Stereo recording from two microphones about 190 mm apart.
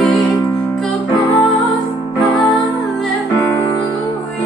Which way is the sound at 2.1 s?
20° left (ahead or behind).